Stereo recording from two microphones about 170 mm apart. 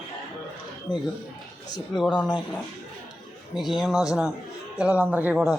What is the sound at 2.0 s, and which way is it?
Speech, 5° left (ahead or behind).